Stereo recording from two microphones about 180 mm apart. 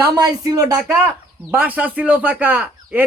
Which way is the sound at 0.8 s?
5° right (ahead or behind).